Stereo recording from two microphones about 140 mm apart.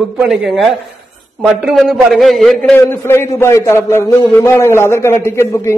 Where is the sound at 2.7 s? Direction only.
15° left (ahead or behind).